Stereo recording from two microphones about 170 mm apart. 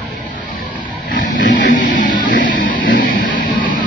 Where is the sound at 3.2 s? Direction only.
50° left (ahead or behind).